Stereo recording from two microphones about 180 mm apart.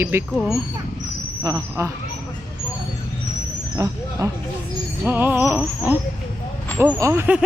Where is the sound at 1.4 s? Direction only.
15° right (ahead or behind).